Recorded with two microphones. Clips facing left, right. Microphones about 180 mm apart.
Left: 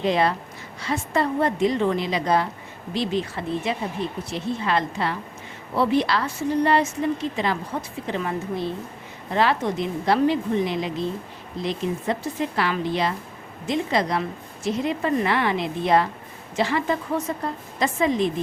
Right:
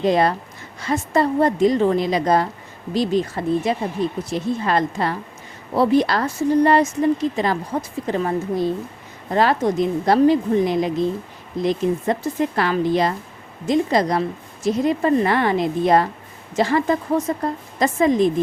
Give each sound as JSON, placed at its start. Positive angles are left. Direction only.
{"t": 0.0, "sound": "a woman's voice", "side_deg": -40}